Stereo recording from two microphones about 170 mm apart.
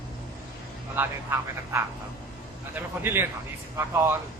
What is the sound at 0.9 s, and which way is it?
Speech, 15° right (ahead or behind).